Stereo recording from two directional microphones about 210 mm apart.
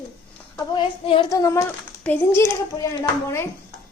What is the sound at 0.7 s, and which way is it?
Child singing, 25° left (ahead or behind).